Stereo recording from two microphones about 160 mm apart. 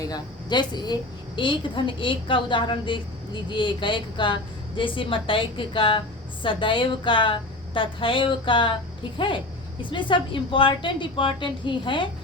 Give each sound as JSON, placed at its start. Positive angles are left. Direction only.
{"t": 0.0, "sound": "a woman's voice", "side_deg": 25}